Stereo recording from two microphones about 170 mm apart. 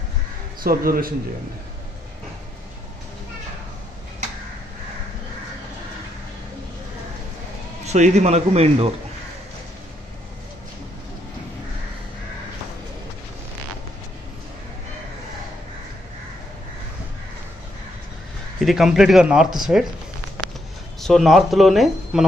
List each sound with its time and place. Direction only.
0.7 s a man's voice: 60° right (ahead or behind)
7.8 s a man's voice: 40° right (ahead or behind)
18.6 s speech: centre (ahead or behind)
21.0 s speech: centre (ahead or behind)